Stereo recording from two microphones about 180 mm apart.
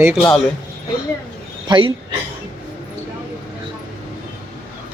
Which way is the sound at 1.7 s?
30° right (ahead or behind).